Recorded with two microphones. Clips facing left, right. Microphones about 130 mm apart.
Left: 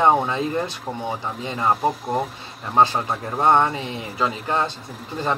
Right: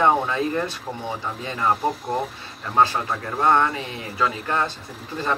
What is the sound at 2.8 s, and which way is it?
Speech, 25° left (ahead or behind).